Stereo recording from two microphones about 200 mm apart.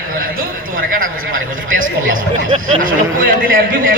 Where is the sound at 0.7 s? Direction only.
45° right (ahead or behind).